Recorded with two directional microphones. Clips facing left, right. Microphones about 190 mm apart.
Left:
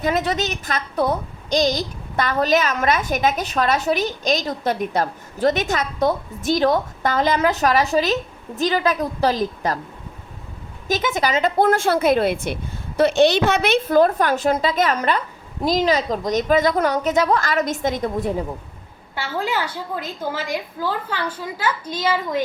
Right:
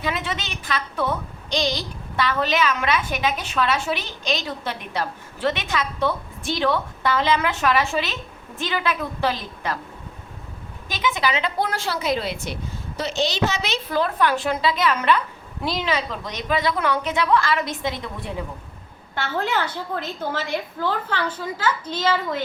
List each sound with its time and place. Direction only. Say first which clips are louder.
0.0 s a woman's voice: left 7 dB; 40° left (ahead or behind)
10.8 s a woman's voice: left 3 dB; 45° left (ahead or behind)
19.1 s a woman's voice: even; 10° left (ahead or behind)